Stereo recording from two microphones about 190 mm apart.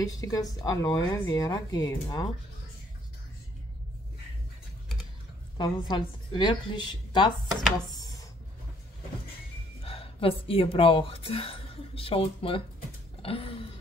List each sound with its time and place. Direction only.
0.0 s speech: 20° left (ahead or behind)
5.6 s a woman's voice: 25° left (ahead or behind)
9.8 s a woman's voice: 30° left (ahead or behind)